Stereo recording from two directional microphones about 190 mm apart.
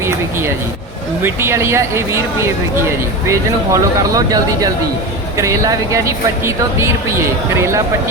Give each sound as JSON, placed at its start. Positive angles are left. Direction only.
{"t": 0.0, "sound": "speech", "side_deg": -15}